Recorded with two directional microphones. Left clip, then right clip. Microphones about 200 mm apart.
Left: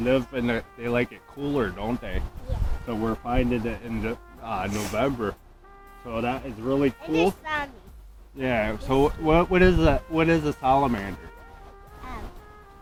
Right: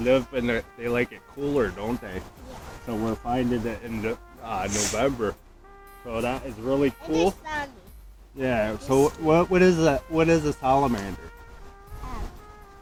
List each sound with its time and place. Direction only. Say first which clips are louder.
0.0 s speech: right 2 dB; 50° left (ahead or behind)
2.8 s speech: even; 10° left (ahead or behind)
3.7 s speech: right 1 dB; 45° left (ahead or behind)
4.7 s speech: right 4 dB; centre (ahead or behind)
4.9 s speech: left 1 dB; 50° left (ahead or behind)
7.0 s a child's voice: even; 5° right (ahead or behind)
8.4 s speech: even; 5° left (ahead or behind)